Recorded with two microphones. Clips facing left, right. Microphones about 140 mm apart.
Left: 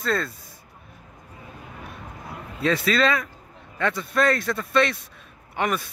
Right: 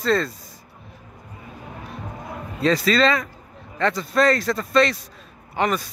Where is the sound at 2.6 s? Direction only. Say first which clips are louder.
Right 3 dB; 5° left (ahead or behind).